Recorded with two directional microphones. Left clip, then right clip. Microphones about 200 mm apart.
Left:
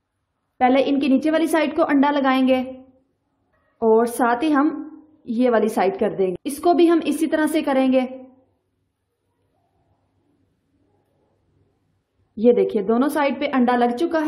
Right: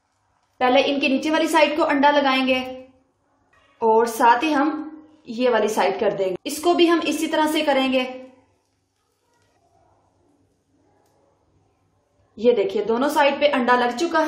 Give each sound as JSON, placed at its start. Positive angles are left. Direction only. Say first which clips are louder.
{"t": 0.6, "sound": "a woman's voice", "louder": "even", "side_deg": 55}
{"t": 3.9, "sound": "a woman's voice", "louder": "right 2 dB", "side_deg": 55}
{"t": 12.4, "sound": "a woman's voice", "louder": "left 2 dB", "side_deg": 50}